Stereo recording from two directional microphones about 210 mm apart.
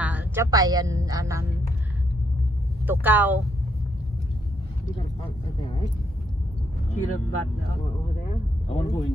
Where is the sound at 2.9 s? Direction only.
10° right (ahead or behind).